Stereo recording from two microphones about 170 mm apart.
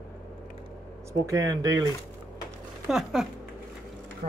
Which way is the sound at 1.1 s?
20° right (ahead or behind).